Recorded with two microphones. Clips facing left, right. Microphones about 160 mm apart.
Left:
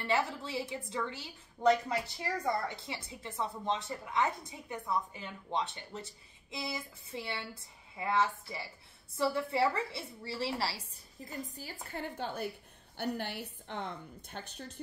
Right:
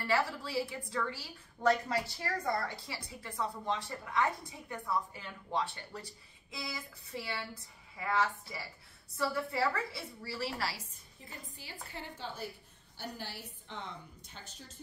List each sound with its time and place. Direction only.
0.0 s a woman's voice: 20° left (ahead or behind); by 14.8 s 60° left (ahead or behind)